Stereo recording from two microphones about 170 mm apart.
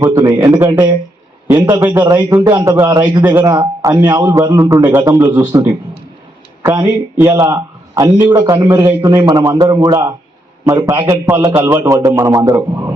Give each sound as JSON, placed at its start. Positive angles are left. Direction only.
{"t": 0.0, "sound": "a man's voice", "side_deg": -15}